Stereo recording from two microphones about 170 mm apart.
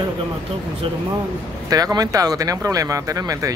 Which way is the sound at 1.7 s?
20° right (ahead or behind).